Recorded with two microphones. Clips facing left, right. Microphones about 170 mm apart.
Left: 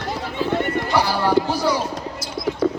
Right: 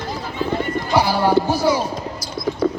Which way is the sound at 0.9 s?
15° right (ahead or behind).